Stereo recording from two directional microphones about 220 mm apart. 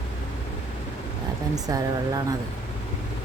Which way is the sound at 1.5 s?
15° right (ahead or behind).